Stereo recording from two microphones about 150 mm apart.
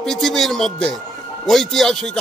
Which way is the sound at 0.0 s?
Centre (ahead or behind).